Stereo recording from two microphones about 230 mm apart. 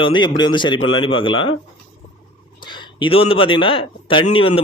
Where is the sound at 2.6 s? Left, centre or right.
Centre.